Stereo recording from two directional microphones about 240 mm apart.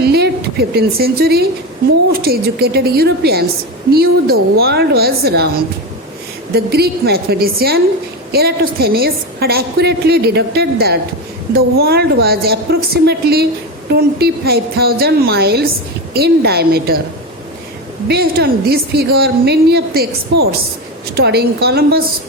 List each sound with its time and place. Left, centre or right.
0.0 s a sound: right
0.7 s a woman's voice: right
18.1 s a woman's voice: right